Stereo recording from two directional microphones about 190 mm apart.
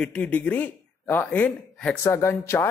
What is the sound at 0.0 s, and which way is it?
Speech, 5° left (ahead or behind).